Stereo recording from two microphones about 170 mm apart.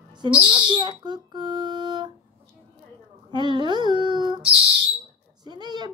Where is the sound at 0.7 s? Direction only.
25° right (ahead or behind).